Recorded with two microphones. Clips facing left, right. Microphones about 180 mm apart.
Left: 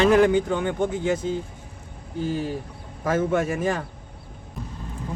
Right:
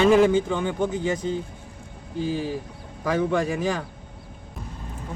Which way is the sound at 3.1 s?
Centre (ahead or behind).